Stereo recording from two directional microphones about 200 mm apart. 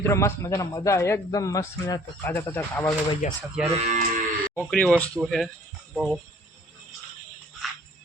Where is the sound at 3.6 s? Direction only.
30° right (ahead or behind).